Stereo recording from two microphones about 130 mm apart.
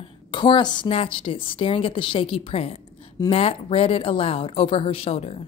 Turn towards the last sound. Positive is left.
turn(degrees=50)  # may be behind; listen again after turning